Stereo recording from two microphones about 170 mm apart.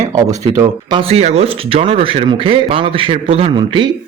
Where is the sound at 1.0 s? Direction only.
35° right (ahead or behind).